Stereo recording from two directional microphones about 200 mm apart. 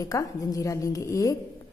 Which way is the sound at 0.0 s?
15° left (ahead or behind).